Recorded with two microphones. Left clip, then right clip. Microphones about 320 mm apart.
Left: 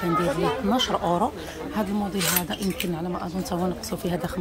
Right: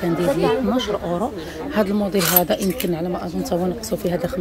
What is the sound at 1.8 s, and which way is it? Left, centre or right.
Speech, centre.